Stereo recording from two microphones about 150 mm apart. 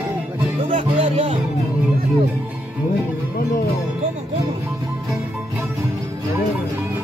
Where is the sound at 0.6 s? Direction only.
45° right (ahead or behind).